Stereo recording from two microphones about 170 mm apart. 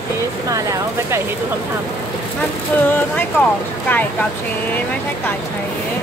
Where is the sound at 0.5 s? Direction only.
20° right (ahead or behind).